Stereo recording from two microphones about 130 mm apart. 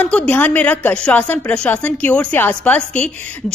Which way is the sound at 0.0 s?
10° left (ahead or behind).